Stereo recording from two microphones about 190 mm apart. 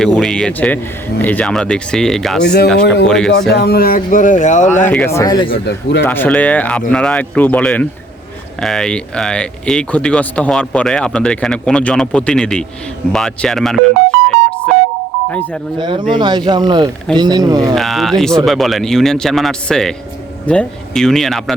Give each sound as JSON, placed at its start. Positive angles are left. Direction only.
{"t": 0.0, "sound": "speech", "side_deg": 5}
{"t": 2.4, "sound": "speech", "side_deg": 60}
{"t": 3.1, "sound": "speech", "side_deg": 5}
{"t": 3.5, "sound": "speech", "side_deg": 55}
{"t": 4.9, "sound": "speech", "side_deg": 10}
{"t": 5.5, "sound": "speech", "side_deg": 60}
{"t": 6.1, "sound": "speech", "side_deg": 10}
{"t": 15.8, "sound": "speech", "side_deg": -25}
{"t": 17.7, "sound": "speech", "side_deg": 0}